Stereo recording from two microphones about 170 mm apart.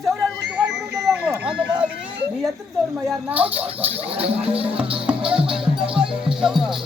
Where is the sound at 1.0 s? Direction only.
5° right (ahead or behind).